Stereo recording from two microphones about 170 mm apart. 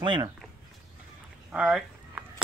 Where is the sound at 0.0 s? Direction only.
25° right (ahead or behind).